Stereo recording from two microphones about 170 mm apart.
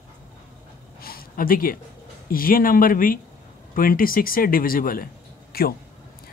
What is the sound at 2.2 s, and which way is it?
A man's voice, 55° left (ahead or behind).